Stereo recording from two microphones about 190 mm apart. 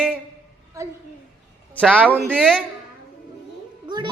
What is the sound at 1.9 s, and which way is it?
Speech, 10° right (ahead or behind).